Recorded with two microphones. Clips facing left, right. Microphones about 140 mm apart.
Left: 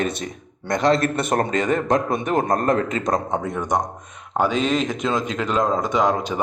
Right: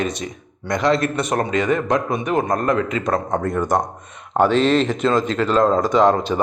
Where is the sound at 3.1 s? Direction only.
10° left (ahead or behind).